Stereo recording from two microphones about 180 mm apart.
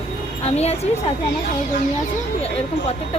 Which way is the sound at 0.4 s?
35° left (ahead or behind).